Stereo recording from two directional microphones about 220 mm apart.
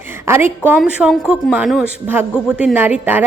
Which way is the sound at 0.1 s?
10° right (ahead or behind).